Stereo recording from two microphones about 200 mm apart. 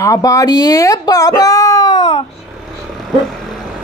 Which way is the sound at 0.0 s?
15° left (ahead or behind).